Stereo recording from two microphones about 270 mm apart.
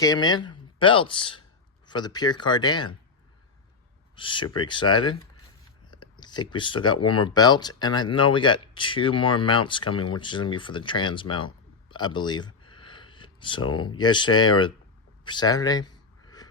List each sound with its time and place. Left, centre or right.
0.0 s speech: centre
4.1 s speech: centre
15.2 s a sound: centre